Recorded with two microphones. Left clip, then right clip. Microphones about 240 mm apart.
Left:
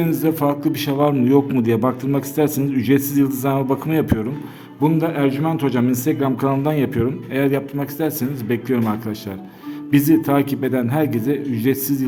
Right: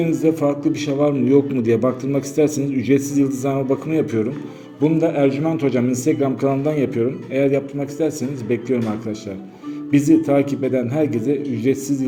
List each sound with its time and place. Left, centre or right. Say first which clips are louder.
0.0 s a man's voice: right 1 dB; left
9.9 s a man's voice: right 1 dB; left